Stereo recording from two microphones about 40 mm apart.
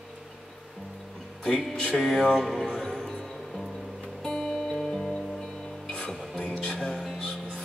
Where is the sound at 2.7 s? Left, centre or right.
Centre.